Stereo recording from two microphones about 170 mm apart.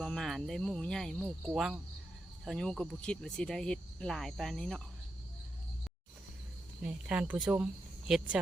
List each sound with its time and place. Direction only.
0.0 s speech: centre (ahead or behind)
6.8 s speech: 5° right (ahead or behind)